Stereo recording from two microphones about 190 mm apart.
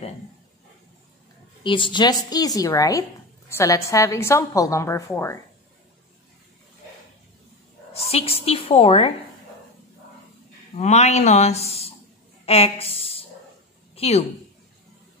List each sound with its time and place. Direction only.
1.6 s speech: 25° left (ahead or behind)
7.9 s a woman's voice: 30° left (ahead or behind)
10.8 s a woman's voice: 35° left (ahead or behind)